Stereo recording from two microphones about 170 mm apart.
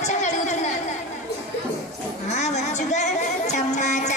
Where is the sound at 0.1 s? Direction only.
45° left (ahead or behind).